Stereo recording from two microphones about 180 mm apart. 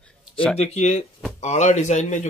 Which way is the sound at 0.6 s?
35° left (ahead or behind).